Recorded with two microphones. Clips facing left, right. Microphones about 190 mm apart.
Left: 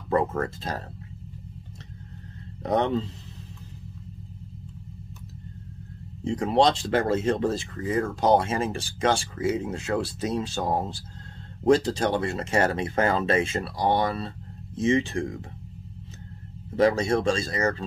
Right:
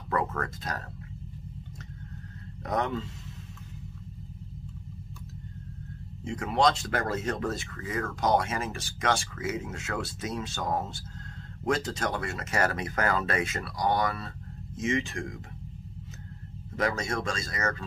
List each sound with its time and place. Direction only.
0.1 s speech: 30° left (ahead or behind)
2.6 s speech: 30° left (ahead or behind)
6.2 s speech: 35° left (ahead or behind)
16.7 s speech: 30° left (ahead or behind)